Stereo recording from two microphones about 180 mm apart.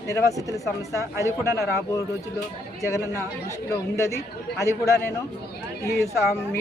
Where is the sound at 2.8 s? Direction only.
15° left (ahead or behind).